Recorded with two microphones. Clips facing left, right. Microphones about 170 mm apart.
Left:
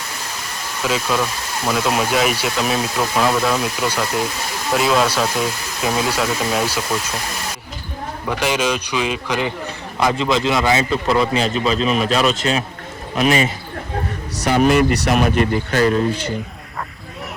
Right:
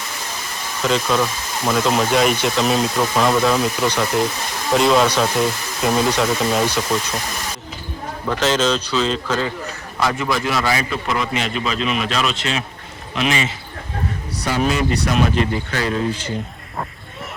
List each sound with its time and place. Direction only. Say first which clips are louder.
0.8 s speech: right 2 dB; 5° left (ahead or behind)
8.3 s a man's voice: right 2 dB; 10° left (ahead or behind)
11.0 s a man's voice: left 5 dB; 35° left (ahead or behind)
14.3 s speech: left 6 dB; 70° left (ahead or behind)